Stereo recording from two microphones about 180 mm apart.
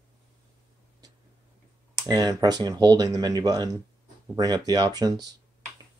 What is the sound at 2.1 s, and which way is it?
Speech, 20° right (ahead or behind).